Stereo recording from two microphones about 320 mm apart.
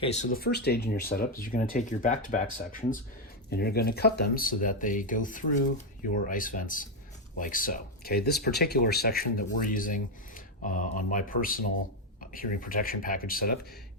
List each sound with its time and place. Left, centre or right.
0.0 s speech: left
3.5 s speech: left